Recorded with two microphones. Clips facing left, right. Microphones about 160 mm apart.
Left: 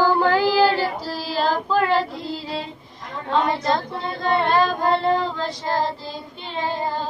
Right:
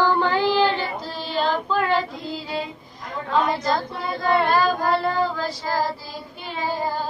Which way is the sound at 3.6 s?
25° left (ahead or behind).